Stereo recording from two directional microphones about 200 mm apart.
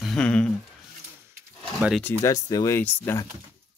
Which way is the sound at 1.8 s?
5° right (ahead or behind).